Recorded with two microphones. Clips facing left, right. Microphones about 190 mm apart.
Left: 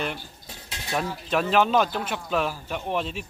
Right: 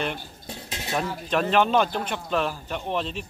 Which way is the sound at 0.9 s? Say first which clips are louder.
Even; 5° left (ahead or behind).